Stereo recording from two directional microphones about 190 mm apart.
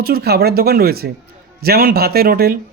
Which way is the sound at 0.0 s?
55° right (ahead or behind).